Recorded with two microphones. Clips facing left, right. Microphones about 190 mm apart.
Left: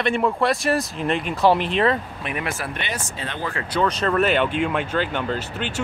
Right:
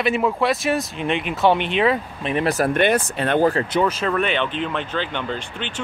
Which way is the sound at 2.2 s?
35° right (ahead or behind).